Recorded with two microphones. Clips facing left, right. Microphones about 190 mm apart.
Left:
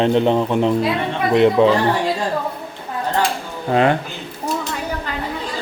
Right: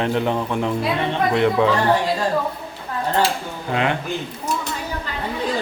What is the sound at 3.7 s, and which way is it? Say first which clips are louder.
Speech: left 6 dB; 40° left (ahead or behind).